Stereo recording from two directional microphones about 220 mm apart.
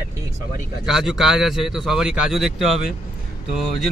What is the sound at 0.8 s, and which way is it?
Speech, centre (ahead or behind).